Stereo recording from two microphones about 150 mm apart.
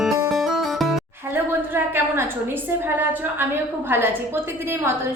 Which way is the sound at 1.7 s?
15° right (ahead or behind).